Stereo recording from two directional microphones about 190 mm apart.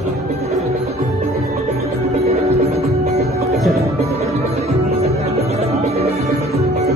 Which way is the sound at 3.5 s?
Centre (ahead or behind).